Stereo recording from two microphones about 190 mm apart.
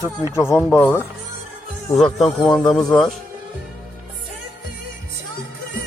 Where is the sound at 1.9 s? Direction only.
Centre (ahead or behind).